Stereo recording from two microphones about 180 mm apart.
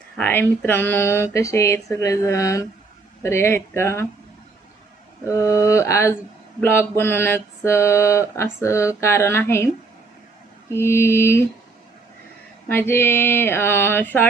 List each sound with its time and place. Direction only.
0.2 s speech: 10° left (ahead or behind)
5.4 s speech: 15° left (ahead or behind)
10.8 s speech: 15° left (ahead or behind)
12.6 s speech: 10° left (ahead or behind)